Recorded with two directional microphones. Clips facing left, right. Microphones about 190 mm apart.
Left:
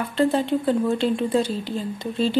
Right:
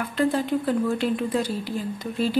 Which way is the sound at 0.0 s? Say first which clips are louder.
Left 2 dB; 25° left (ahead or behind).